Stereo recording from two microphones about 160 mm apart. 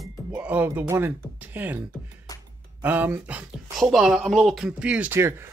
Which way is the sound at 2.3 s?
25° left (ahead or behind).